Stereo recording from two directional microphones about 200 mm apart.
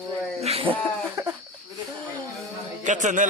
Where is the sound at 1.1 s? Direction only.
15° right (ahead or behind).